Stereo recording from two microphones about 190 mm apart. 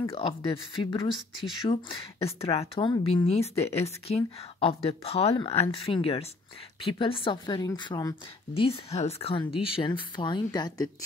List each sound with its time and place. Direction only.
0.1 s a woman's voice: 25° left (ahead or behind)